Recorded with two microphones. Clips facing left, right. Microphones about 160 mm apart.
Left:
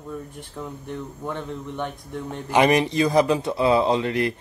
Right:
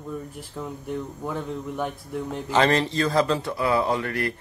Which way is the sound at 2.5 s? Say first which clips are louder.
Left 3 dB; 15° left (ahead or behind).